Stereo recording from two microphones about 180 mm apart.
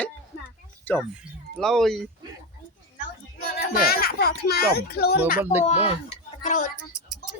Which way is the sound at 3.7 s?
55° left (ahead or behind).